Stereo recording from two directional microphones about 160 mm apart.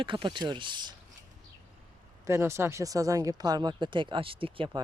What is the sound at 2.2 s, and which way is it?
Speech, 15° right (ahead or behind).